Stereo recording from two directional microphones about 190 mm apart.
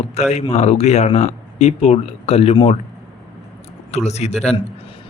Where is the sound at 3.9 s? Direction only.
35° left (ahead or behind).